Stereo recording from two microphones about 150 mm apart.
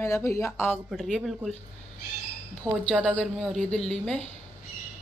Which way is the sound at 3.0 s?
5° left (ahead or behind).